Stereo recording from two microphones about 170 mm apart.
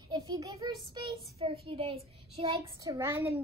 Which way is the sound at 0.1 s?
20° right (ahead or behind).